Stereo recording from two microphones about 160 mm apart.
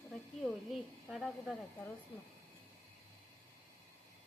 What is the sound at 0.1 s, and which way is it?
Snake, centre (ahead or behind).